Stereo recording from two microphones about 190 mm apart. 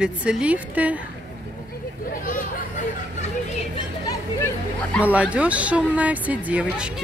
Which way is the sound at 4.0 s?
20° left (ahead or behind).